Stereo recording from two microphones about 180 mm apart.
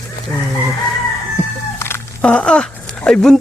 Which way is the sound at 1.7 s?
15° left (ahead or behind).